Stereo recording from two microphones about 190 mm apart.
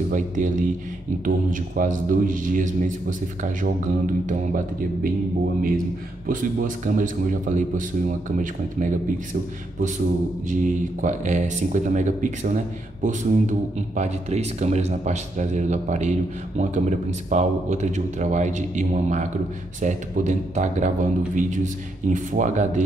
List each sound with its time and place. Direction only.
0.1 s a man's voice: 40° right (ahead or behind)
6.2 s a man's voice: 45° right (ahead or behind)